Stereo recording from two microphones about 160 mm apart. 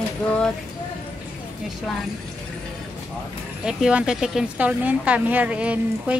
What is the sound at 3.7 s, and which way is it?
Speech, 5° right (ahead or behind).